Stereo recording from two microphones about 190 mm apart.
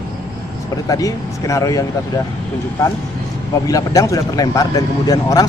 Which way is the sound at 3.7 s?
20° left (ahead or behind).